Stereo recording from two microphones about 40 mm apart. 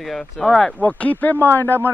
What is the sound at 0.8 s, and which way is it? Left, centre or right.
Speech, left.